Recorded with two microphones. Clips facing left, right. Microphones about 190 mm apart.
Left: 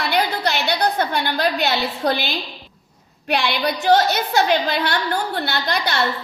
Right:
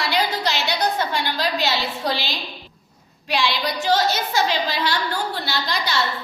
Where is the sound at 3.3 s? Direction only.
60° left (ahead or behind).